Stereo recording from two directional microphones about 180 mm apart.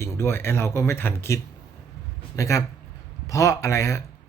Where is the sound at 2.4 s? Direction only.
15° left (ahead or behind).